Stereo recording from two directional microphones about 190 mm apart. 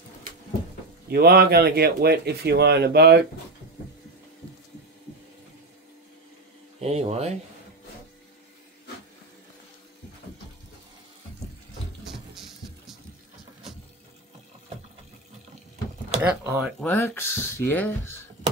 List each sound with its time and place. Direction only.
1.0 s speech: 55° right (ahead or behind)
6.8 s speech: 35° right (ahead or behind)
12.0 s music: centre (ahead or behind)
16.2 s a sound: 10° right (ahead or behind)
16.8 s speech: 10° left (ahead or behind)